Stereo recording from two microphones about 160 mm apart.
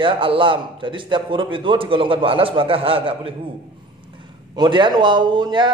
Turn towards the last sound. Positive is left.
turn(degrees=-30)  # may be behind; listen again after turning